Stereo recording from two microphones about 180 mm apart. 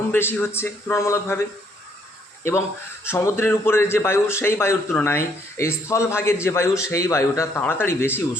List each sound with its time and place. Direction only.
0.1 s a man's voice: 10° left (ahead or behind)
2.4 s a man's voice: 15° left (ahead or behind)